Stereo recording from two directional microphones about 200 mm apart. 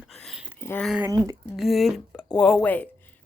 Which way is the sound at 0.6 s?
10° left (ahead or behind).